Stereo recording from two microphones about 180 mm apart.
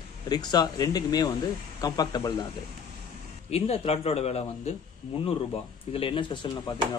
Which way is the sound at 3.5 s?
35° left (ahead or behind).